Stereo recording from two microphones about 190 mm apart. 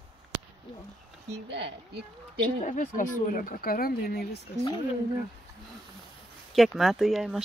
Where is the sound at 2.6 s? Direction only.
40° left (ahead or behind).